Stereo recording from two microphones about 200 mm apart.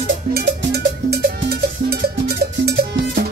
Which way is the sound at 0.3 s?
55° right (ahead or behind).